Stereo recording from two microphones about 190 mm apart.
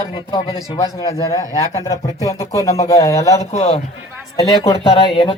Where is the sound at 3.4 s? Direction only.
35° left (ahead or behind).